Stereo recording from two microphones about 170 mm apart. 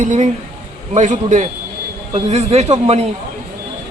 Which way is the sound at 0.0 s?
45° right (ahead or behind).